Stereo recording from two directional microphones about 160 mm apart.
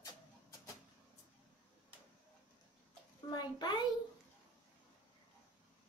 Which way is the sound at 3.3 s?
25° left (ahead or behind).